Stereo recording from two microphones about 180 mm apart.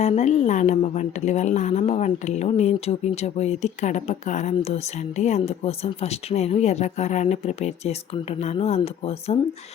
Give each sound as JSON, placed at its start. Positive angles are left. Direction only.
{"t": 0.0, "sound": "speech", "side_deg": 40}